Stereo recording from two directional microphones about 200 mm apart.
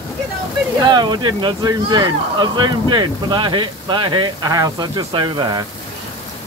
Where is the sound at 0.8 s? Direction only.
20° right (ahead or behind).